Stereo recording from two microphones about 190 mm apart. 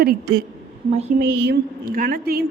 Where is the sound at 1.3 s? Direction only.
60° right (ahead or behind).